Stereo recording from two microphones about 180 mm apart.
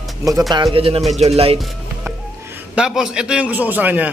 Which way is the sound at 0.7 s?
30° right (ahead or behind).